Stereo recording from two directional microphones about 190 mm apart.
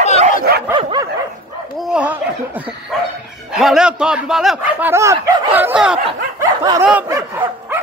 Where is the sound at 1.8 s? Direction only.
5° right (ahead or behind).